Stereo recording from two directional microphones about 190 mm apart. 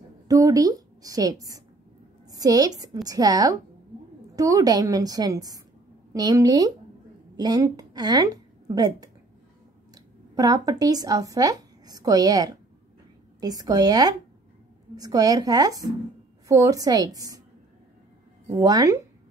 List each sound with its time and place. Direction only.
0.3 s a woman's voice: 20° right (ahead or behind)
18.5 s a woman's voice: 20° right (ahead or behind)